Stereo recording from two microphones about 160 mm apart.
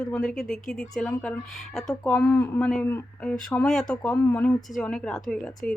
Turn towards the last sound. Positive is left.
turn(degrees=0)  # may be behind; listen again after turning